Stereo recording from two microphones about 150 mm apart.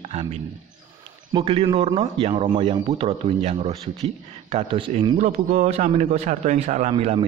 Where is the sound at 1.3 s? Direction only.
40° right (ahead or behind).